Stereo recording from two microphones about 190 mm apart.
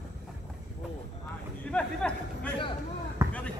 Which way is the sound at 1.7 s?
5° left (ahead or behind).